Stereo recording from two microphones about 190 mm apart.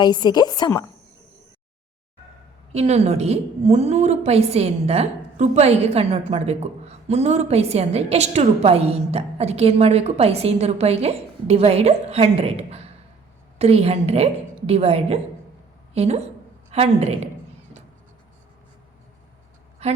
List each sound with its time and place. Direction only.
0.0 s a woman's voice: 20° left (ahead or behind)
2.7 s a woman's voice: 35° right (ahead or behind)
19.8 s a woman's voice: 35° right (ahead or behind)